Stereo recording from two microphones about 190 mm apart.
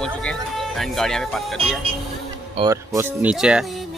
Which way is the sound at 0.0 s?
5° left (ahead or behind).